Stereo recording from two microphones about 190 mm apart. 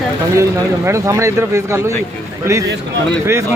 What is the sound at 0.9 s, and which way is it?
Speech, 15° right (ahead or behind).